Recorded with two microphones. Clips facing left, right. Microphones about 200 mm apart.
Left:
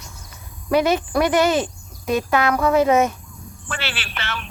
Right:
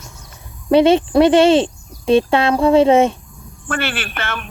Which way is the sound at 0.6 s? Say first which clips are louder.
Right 7 dB; 30° right (ahead or behind).